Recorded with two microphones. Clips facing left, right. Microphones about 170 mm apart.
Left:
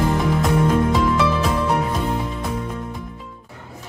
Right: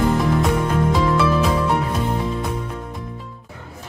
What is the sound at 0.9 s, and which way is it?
Music, centre (ahead or behind).